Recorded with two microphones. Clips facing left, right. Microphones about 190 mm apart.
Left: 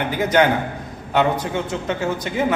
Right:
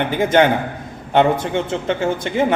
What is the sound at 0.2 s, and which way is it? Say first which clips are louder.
Speech: right 2 dB; 25° right (ahead or behind).